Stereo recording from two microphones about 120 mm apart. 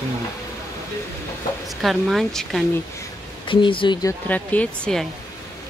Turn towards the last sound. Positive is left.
turn(degrees=10)  # may be behind; listen again after turning